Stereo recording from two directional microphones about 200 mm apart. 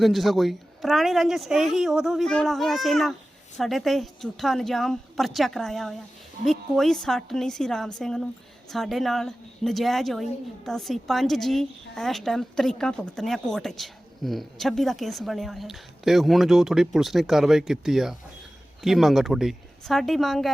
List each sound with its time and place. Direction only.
0.0 s a woman's voice: centre (ahead or behind)